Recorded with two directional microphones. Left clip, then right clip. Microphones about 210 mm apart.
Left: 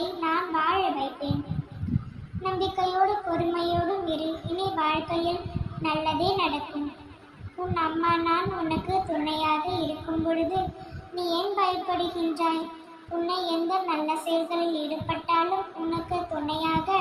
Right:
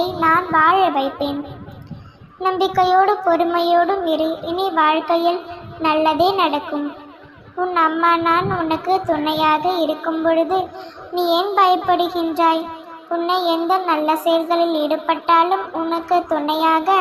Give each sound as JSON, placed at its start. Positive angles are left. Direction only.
{"t": 0.2, "sound": "child singing", "side_deg": -25}
{"t": 2.4, "sound": "child singing", "side_deg": -30}